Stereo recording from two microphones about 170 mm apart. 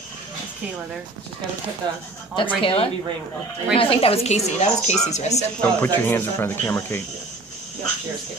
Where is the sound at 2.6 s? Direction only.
30° left (ahead or behind).